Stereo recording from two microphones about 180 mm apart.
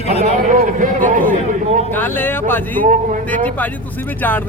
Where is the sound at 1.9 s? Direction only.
10° left (ahead or behind).